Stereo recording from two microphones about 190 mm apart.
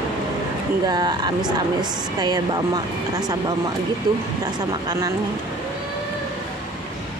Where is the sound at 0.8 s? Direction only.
20° right (ahead or behind).